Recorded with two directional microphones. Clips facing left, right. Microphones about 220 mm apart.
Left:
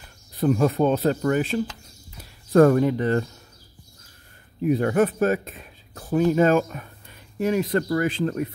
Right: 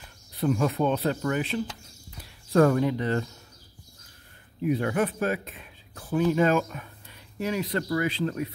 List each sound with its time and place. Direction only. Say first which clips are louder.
0.4 s speech: left 5 dB; 45° left (ahead or behind)
4.6 s speech: left 5 dB; 40° left (ahead or behind)